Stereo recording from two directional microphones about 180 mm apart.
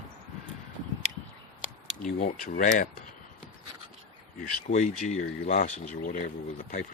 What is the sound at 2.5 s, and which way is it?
Speech, 50° left (ahead or behind).